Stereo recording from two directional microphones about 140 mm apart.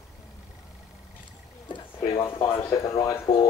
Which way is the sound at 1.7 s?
40° left (ahead or behind).